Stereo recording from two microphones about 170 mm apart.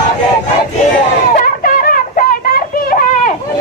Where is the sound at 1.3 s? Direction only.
55° left (ahead or behind).